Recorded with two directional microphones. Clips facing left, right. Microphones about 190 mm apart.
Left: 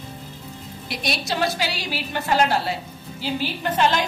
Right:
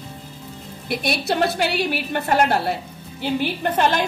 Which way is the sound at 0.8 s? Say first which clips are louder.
Right 5 dB; 55° right (ahead or behind).